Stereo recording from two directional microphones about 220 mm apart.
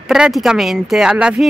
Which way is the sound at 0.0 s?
Centre (ahead or behind).